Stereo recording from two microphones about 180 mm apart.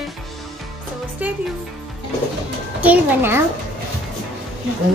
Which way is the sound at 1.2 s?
10° right (ahead or behind).